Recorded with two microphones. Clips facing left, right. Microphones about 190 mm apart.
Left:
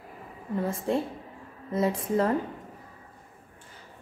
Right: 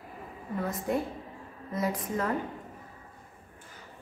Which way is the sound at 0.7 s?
30° left (ahead or behind).